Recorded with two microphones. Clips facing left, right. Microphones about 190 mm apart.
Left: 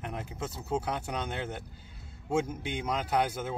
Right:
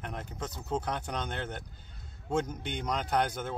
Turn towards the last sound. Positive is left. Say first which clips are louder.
# left 1 dB
turn(degrees=5)  # may be behind; listen again after turning